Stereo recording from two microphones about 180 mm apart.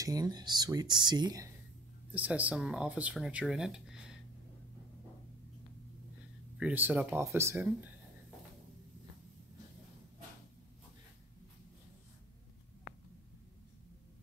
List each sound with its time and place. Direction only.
0.0 s speech: 20° right (ahead or behind)
2.1 s speech: 10° right (ahead or behind)
6.6 s speech: 10° right (ahead or behind)